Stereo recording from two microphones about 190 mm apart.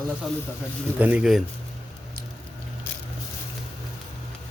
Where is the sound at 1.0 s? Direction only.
5° right (ahead or behind).